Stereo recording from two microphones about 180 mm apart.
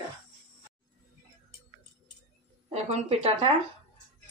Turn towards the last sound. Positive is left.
turn(degrees=-35)  # may be behind; listen again after turning